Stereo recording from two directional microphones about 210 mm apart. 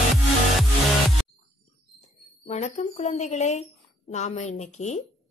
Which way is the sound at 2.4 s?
30° left (ahead or behind).